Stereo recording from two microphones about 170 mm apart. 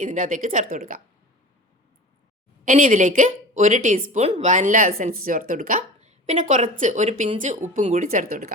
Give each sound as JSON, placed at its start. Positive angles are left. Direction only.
{"t": 0.0, "sound": "a woman's voice", "side_deg": -50}
{"t": 2.6, "sound": "a woman's voice", "side_deg": -50}